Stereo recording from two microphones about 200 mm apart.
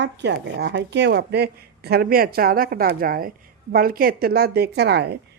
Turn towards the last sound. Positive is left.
turn(degrees=-55)  # may be behind; listen again after turning